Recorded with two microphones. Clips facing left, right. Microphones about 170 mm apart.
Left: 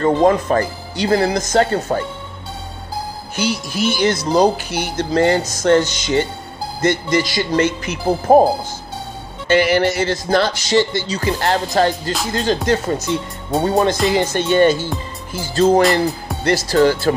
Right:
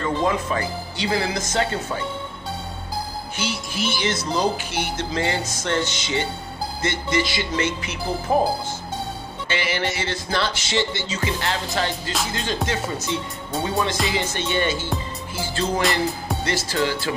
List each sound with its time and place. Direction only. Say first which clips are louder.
0.0 s speech: left 8 dB; 45° left (ahead or behind)
3.3 s speech: left 8 dB; 40° left (ahead or behind)
9.5 s speech: left 11 dB; 40° left (ahead or behind)
13.5 s speech: left 8 dB; 40° left (ahead or behind)
15.8 s speech: left 7 dB; centre (ahead or behind)
16.4 s speech: left 10 dB; 40° left (ahead or behind)